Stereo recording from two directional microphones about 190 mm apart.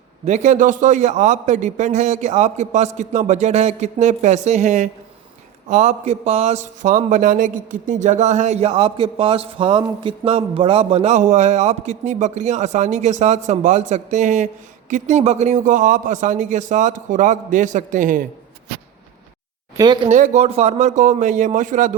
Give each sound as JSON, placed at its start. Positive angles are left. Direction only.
{"t": 0.3, "sound": "speech", "side_deg": -35}
{"t": 19.7, "sound": "speech", "side_deg": -20}
{"t": 20.1, "sound": "speech", "side_deg": -40}